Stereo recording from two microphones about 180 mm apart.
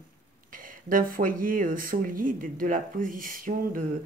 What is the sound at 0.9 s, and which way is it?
A woman's voice, 50° right (ahead or behind).